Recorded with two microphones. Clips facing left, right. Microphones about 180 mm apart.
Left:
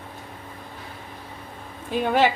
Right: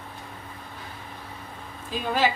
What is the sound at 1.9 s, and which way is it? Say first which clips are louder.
Speech: left 5 dB; 60° left (ahead or behind).